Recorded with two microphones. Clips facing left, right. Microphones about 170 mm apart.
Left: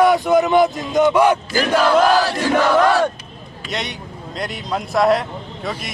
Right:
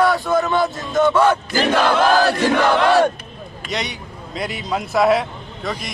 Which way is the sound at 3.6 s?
Centre (ahead or behind).